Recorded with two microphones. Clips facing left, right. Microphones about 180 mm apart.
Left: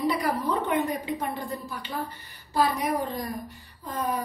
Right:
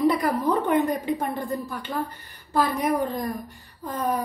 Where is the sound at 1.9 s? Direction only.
50° right (ahead or behind).